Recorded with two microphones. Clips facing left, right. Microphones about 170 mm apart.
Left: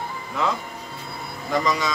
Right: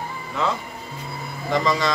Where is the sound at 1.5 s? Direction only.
5° left (ahead or behind).